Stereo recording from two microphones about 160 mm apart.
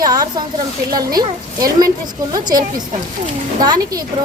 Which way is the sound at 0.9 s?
25° right (ahead or behind).